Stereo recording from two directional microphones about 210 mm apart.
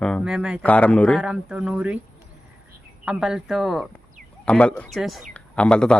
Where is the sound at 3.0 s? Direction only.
5° right (ahead or behind).